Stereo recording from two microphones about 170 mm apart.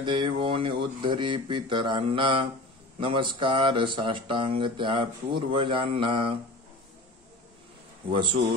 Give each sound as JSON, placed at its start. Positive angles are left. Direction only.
{"t": 0.0, "sound": "speech", "side_deg": -30}
{"t": 8.1, "sound": "speech", "side_deg": -30}